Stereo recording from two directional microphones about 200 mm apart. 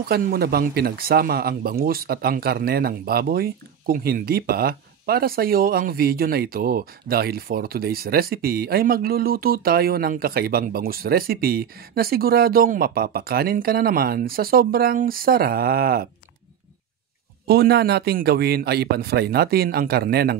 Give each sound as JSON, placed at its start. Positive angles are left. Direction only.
{"t": 0.0, "sound": "speech", "side_deg": -50}
{"t": 17.5, "sound": "speech", "side_deg": -55}